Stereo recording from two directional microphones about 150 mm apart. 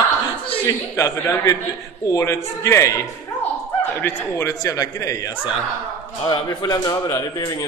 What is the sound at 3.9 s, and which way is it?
A man's voice, 15° left (ahead or behind).